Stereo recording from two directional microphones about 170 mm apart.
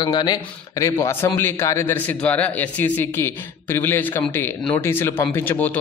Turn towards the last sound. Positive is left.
turn(degrees=10)  # may be behind; listen again after turning